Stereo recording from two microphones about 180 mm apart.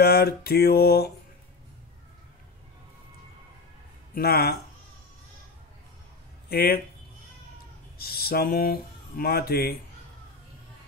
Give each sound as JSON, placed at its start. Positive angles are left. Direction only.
{"t": 0.0, "sound": "mantra", "side_deg": 60}
{"t": 4.1, "sound": "mantra", "side_deg": 60}
{"t": 6.5, "sound": "mantra", "side_deg": 60}
{"t": 8.0, "sound": "speech", "side_deg": 60}